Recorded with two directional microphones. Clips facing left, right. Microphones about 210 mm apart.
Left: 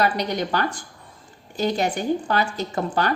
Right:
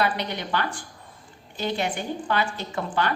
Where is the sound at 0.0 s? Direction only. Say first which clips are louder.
Left 4 dB; 40° left (ahead or behind).